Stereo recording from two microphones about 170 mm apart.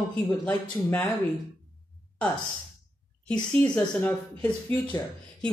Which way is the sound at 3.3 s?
5° left (ahead or behind).